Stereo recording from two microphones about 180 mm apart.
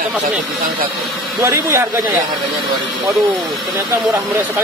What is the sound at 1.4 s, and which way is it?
Speech, 15° right (ahead or behind).